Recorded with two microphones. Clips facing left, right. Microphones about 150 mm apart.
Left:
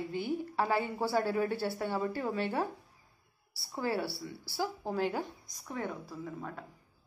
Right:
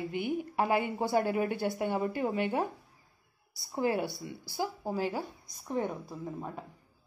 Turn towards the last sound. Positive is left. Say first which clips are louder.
# right 2 dB
turn(degrees=-20)  # may be behind; listen again after turning